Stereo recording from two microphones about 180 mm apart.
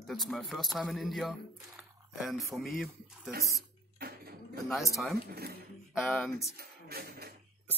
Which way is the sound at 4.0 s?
60° right (ahead or behind).